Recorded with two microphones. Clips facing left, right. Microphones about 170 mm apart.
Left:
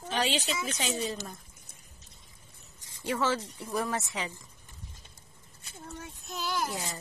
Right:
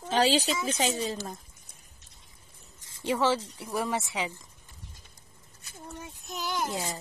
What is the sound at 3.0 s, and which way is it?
Speech, 15° right (ahead or behind).